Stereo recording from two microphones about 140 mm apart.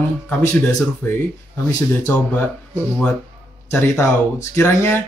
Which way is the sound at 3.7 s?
15° left (ahead or behind).